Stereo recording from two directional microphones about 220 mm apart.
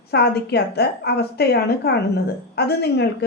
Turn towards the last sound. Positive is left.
turn(degrees=50)  # may be behind; listen again after turning